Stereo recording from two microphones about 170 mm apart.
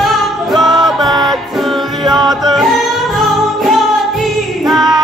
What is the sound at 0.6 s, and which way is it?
Music, 25° right (ahead or behind).